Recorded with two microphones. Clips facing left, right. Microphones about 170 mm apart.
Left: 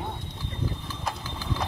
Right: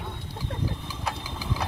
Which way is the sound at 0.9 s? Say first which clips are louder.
Even; 10° right (ahead or behind).